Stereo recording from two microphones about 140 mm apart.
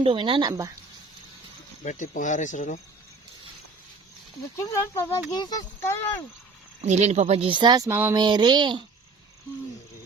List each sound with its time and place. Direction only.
0.0 s speech: 40° right (ahead or behind)
1.8 s speech: 65° left (ahead or behind)
4.5 s speech: 20° left (ahead or behind)
6.8 s speech: 55° right (ahead or behind); by 7.9 s 30° right (ahead or behind)
7.9 s a sound: 15° right (ahead or behind)
8.1 s speech: 30° right (ahead or behind)